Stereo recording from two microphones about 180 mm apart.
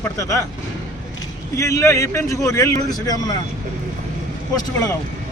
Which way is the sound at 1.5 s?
15° left (ahead or behind).